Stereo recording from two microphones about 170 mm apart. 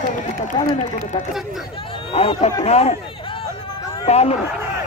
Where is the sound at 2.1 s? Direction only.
35° left (ahead or behind).